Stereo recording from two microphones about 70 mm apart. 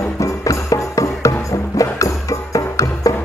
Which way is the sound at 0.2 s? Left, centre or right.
Left.